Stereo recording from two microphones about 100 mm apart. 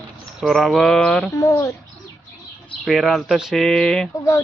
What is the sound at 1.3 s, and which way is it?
Speech, 35° left (ahead or behind).